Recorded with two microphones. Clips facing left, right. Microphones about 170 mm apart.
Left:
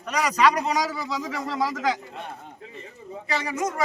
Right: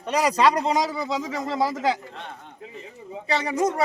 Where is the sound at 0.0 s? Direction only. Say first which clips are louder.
Right 2 dB; 30° right (ahead or behind).